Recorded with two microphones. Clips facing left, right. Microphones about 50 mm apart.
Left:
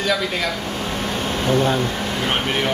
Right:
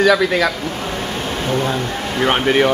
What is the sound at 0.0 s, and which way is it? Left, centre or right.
Speech, right.